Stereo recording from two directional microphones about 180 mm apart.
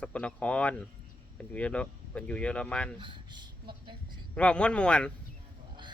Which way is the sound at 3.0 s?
25° right (ahead or behind).